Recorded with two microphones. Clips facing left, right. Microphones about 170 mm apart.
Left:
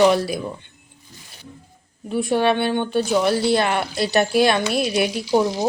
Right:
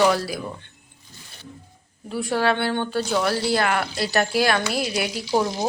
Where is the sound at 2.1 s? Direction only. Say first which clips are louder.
Left 4 dB; 20° left (ahead or behind).